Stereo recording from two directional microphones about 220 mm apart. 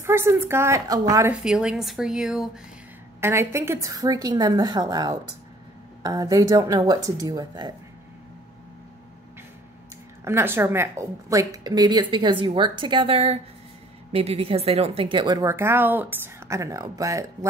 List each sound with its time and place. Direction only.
0.0 s a woman's voice: 10° right (ahead or behind)
1.4 s a woman's voice: 5° right (ahead or behind)
10.2 s a woman's voice: 10° right (ahead or behind)